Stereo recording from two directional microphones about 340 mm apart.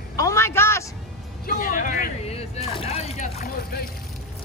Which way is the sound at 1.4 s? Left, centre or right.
Left.